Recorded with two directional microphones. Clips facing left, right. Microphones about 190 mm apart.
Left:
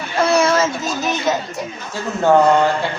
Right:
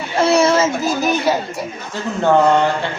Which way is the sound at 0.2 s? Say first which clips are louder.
Right 2 dB; 30° right (ahead or behind).